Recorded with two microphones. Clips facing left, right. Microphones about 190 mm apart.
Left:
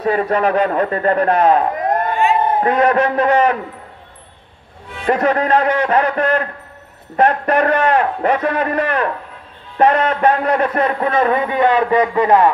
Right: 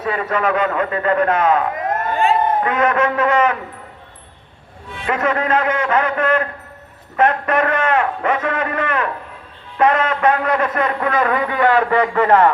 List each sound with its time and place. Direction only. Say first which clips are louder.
0.0 s a man's voice: left 4 dB; 35° left (ahead or behind)
5.0 s a man's voice: left 4 dB; 35° left (ahead or behind); by 12.4 s 15° left (ahead or behind)